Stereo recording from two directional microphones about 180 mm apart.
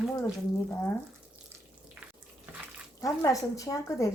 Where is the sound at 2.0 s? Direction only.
10° right (ahead or behind).